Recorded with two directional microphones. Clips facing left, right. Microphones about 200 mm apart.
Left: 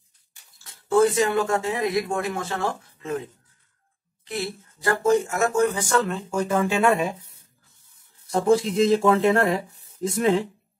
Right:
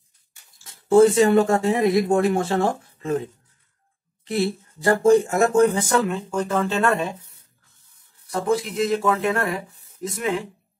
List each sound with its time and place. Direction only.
0.8 s speech: 30° right (ahead or behind)
4.3 s speech: 30° right (ahead or behind)
5.8 s speech: 20° right (ahead or behind)
6.0 s speech: 5° left (ahead or behind)
8.3 s speech: 30° left (ahead or behind)